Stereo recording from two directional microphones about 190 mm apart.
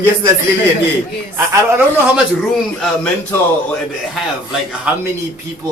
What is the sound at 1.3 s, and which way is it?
Speech, 15° right (ahead or behind).